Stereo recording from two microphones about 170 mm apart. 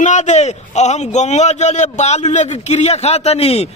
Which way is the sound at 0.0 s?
45° left (ahead or behind).